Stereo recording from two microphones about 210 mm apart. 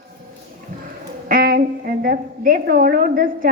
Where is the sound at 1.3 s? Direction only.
45° right (ahead or behind).